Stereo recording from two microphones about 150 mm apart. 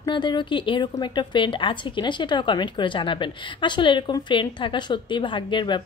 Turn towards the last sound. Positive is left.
turn(degrees=30)  # may be behind; listen again after turning